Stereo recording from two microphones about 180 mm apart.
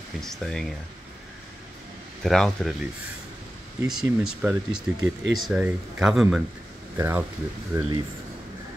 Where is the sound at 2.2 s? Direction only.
Centre (ahead or behind).